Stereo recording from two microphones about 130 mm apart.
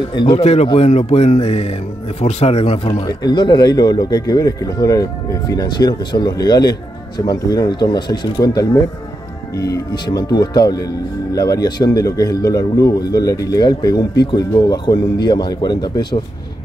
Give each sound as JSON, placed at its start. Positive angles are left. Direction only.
{"t": 0.1, "sound": "speech", "side_deg": 35}
{"t": 0.4, "sound": "speech", "side_deg": 55}